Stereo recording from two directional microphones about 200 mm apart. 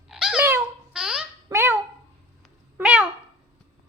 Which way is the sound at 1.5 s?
10° right (ahead or behind).